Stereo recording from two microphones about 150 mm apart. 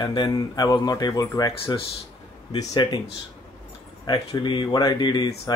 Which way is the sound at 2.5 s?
30° left (ahead or behind).